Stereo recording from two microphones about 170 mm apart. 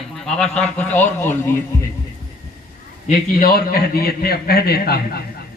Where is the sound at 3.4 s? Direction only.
65° left (ahead or behind).